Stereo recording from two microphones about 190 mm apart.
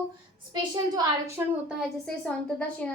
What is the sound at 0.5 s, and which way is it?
Speech, 20° right (ahead or behind).